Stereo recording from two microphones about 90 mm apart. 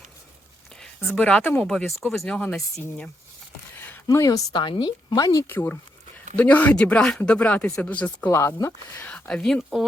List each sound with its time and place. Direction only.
0.8 s speech: 10° left (ahead or behind)
3.8 s a sound: 20° left (ahead or behind)
4.0 s speech: 40° left (ahead or behind)
4.5 s speech: 55° left (ahead or behind)
5.5 s speech: 25° left (ahead or behind)
8.3 s speech: 30° left (ahead or behind)
8.6 s speech: 20° left (ahead or behind)